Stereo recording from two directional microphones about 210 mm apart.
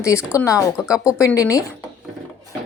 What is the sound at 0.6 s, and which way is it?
Speech, 5° right (ahead or behind).